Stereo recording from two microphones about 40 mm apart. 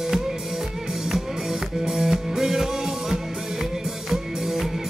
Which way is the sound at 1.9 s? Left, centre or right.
Centre.